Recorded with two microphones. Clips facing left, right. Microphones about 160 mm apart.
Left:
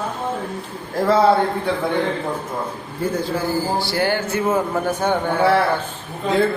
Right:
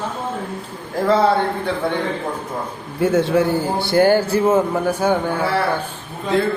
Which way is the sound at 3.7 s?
50° right (ahead or behind).